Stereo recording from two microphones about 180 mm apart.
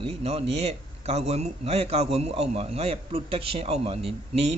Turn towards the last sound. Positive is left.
turn(degrees=-35)  # may be behind; listen again after turning